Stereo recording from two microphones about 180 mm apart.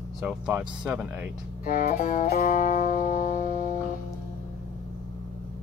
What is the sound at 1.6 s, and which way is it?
Music, 50° left (ahead or behind).